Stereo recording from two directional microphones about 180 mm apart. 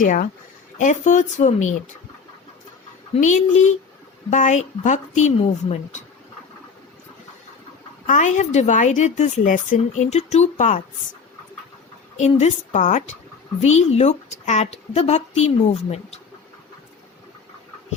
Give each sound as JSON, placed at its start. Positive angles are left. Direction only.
{"t": 0.0, "sound": "speech", "side_deg": 45}
{"t": 3.2, "sound": "speech", "side_deg": 45}
{"t": 8.0, "sound": "speech", "side_deg": 45}
{"t": 12.1, "sound": "speech", "side_deg": 40}